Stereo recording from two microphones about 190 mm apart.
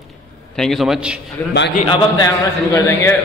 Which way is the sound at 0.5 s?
Centre (ahead or behind).